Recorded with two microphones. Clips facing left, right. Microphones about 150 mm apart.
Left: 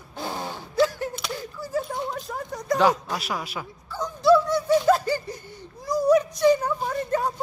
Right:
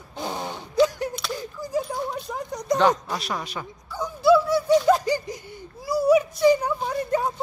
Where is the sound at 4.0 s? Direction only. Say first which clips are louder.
Even; 5° right (ahead or behind).